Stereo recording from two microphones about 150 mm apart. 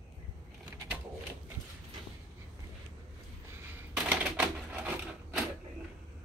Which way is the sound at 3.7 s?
10° right (ahead or behind).